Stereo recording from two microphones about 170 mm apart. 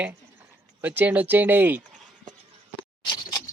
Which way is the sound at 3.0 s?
25° left (ahead or behind).